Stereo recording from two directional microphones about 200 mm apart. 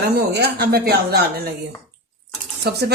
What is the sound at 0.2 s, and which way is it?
Speech, 50° right (ahead or behind).